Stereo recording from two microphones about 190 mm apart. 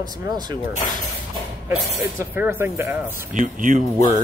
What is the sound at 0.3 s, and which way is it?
Speech, 20° right (ahead or behind).